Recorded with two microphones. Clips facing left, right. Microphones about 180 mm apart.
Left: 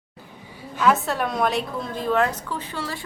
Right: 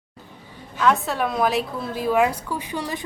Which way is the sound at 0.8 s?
Centre (ahead or behind).